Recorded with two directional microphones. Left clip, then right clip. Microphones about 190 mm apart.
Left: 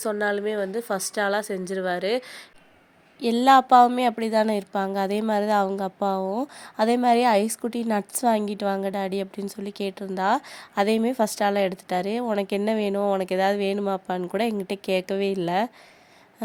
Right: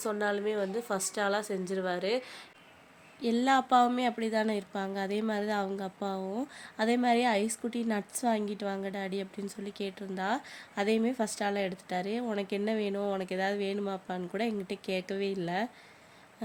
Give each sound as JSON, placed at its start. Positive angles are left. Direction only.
{"t": 0.0, "sound": "a woman's voice", "side_deg": 30}
{"t": 3.2, "sound": "a woman's voice", "side_deg": 40}